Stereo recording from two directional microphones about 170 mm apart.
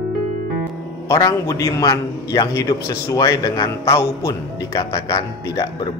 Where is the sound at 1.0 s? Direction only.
20° left (ahead or behind).